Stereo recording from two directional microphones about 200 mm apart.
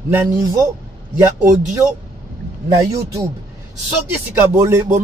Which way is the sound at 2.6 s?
15° right (ahead or behind).